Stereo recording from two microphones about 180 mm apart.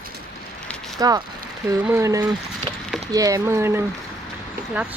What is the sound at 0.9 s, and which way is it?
Speech, 20° right (ahead or behind).